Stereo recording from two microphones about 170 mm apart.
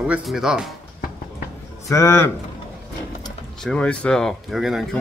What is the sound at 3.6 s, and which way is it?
Speech, 5° left (ahead or behind).